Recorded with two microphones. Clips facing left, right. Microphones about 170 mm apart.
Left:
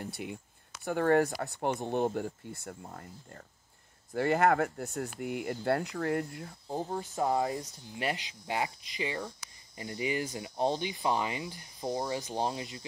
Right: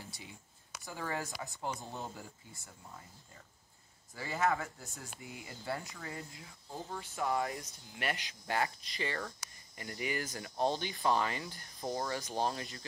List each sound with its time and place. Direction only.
0.0 s speech: 60° left (ahead or behind)
6.9 s speech: 35° left (ahead or behind)
7.4 s speech: 20° left (ahead or behind)